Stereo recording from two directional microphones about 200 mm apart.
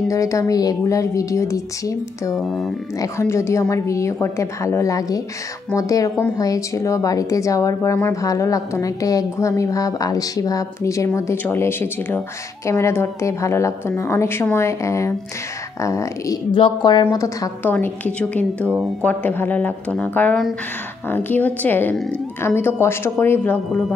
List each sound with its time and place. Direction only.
0.1 s speech: 15° left (ahead or behind)
2.3 s speech: centre (ahead or behind)
3.0 s speech: 15° left (ahead or behind)